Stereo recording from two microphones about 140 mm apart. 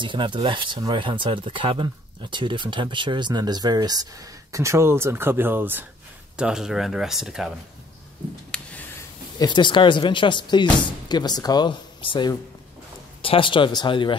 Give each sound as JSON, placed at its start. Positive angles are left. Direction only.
{"t": 0.0, "sound": "speech", "side_deg": -35}
{"t": 8.5, "sound": "a sound", "side_deg": 5}
{"t": 9.4, "sound": "speech", "side_deg": 35}